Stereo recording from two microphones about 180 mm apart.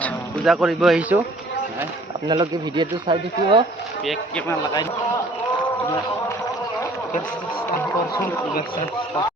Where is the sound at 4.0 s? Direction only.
Centre (ahead or behind).